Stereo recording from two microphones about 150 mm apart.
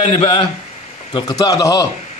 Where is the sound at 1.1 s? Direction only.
25° left (ahead or behind).